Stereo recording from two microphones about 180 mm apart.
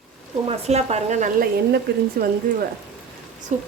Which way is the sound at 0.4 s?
35° right (ahead or behind).